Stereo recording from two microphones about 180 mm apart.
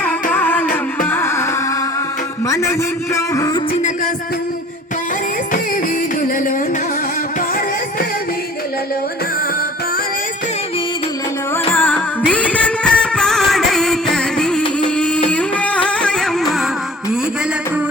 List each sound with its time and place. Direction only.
0.0 s music: 5° left (ahead or behind)
2.5 s a man's voice: 15° left (ahead or behind)
3.2 s music: 20° left (ahead or behind)
11.7 s music: 10° left (ahead or behind)
14.9 s carnatic music: 5° left (ahead or behind)
15.3 s music: 5° left (ahead or behind)